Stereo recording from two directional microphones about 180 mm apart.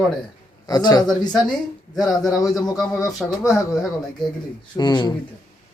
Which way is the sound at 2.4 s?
20° left (ahead or behind).